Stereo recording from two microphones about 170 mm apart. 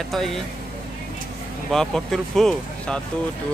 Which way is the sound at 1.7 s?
5° left (ahead or behind).